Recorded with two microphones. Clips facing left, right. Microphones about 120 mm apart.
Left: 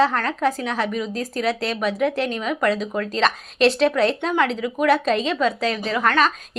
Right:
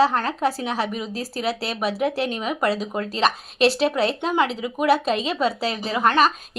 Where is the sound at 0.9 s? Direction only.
15° right (ahead or behind).